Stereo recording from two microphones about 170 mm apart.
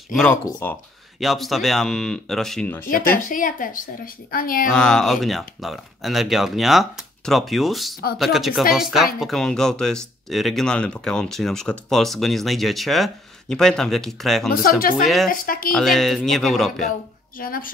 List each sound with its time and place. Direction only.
0.1 s speech: 5° left (ahead or behind)
1.2 s speech: centre (ahead or behind)
3.2 s speech: 50° left (ahead or behind)
4.6 s speech: 5° left (ahead or behind)
14.5 s speech: 60° left (ahead or behind)
15.7 s speech: centre (ahead or behind)
17.4 s speech: 55° left (ahead or behind)